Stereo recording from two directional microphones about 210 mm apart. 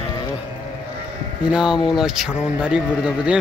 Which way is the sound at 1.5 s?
5° right (ahead or behind).